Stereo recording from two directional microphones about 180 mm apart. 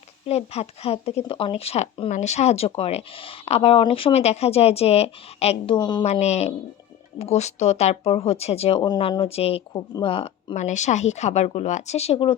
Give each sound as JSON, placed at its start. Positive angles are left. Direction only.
{"t": 0.3, "sound": "speech", "side_deg": 35}
{"t": 6.1, "sound": "speech", "side_deg": 40}